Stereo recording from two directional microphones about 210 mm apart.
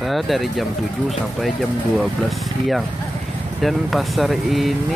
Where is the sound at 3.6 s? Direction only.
Centre (ahead or behind).